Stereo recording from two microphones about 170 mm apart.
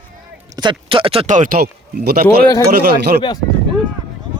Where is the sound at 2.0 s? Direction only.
70° right (ahead or behind).